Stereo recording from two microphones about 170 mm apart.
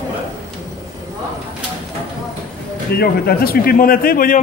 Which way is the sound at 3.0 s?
65° left (ahead or behind).